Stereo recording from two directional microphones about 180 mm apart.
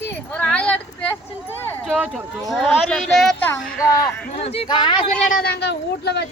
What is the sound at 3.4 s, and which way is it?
Speech, 20° left (ahead or behind).